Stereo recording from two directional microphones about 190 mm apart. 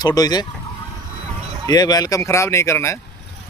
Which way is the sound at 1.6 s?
20° left (ahead or behind).